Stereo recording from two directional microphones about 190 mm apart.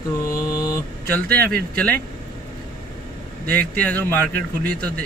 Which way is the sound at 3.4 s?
5° left (ahead or behind).